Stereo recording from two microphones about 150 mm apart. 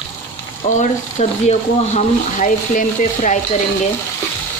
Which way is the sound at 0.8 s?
50° left (ahead or behind).